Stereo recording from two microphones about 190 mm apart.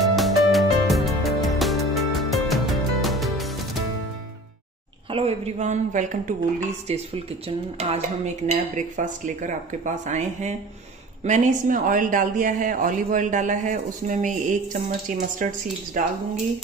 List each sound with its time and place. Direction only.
0.0 s music: centre (ahead or behind)
5.1 s speech: 35° right (ahead or behind)